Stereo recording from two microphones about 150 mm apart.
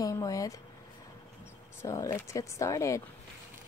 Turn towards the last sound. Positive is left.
turn(degrees=20)  # may be behind; listen again after turning